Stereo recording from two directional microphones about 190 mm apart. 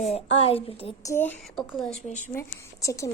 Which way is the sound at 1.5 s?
Centre (ahead or behind).